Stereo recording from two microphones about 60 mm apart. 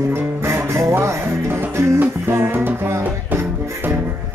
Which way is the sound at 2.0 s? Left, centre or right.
Right.